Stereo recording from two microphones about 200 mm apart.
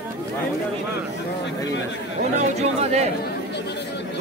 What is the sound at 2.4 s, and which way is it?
Speech, 35° right (ahead or behind).